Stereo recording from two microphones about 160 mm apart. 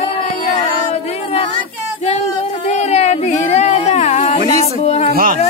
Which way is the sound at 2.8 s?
45° left (ahead or behind).